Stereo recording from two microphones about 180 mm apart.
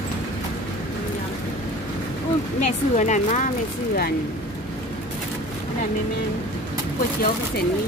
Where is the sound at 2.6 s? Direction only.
40° left (ahead or behind).